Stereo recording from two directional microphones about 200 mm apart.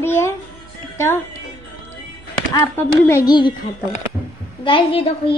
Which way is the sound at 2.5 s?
15° left (ahead or behind).